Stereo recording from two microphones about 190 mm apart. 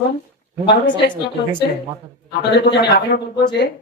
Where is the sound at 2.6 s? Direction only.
60° left (ahead or behind).